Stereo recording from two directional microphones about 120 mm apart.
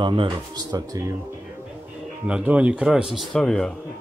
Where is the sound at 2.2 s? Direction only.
10° right (ahead or behind).